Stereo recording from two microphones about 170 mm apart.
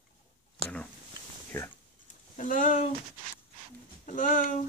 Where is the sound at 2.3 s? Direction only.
50° left (ahead or behind).